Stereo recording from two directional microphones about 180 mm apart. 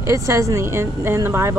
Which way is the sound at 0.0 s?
15° right (ahead or behind).